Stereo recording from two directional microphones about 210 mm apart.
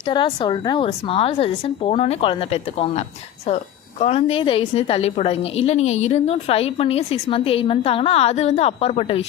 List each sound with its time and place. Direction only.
0.0 s a woman's voice: 25° left (ahead or behind)
4.0 s a woman's voice: 30° left (ahead or behind)